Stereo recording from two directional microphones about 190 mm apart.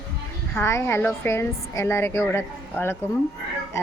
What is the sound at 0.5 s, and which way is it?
A woman's voice, 15° left (ahead or behind).